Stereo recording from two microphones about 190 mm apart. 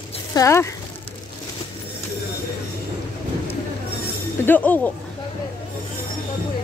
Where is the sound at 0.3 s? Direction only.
15° left (ahead or behind).